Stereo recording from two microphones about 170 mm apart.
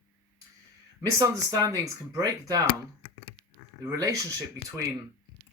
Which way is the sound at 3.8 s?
20° right (ahead or behind).